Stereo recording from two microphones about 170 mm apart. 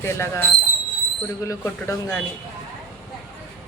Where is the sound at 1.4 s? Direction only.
20° left (ahead or behind).